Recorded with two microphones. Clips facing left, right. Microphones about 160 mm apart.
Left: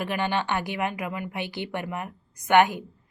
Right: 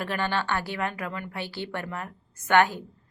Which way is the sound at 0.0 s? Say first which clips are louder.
Left 2 dB; 15° left (ahead or behind).